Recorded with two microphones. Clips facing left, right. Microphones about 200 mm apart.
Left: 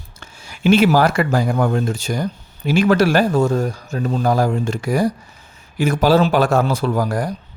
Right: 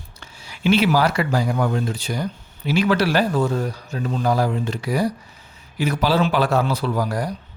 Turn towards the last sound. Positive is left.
turn(degrees=50)  # may be behind; listen again after turning